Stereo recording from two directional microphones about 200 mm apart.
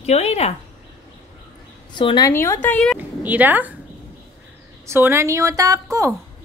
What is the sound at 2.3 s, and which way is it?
Speech, 15° left (ahead or behind).